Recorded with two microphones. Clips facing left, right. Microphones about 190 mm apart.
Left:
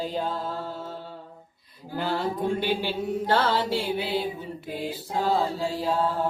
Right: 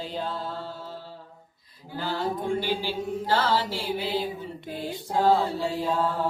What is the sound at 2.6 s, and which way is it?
Mantra, 65° left (ahead or behind).